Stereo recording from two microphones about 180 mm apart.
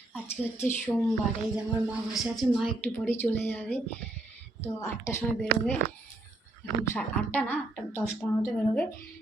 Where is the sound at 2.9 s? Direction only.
10° left (ahead or behind).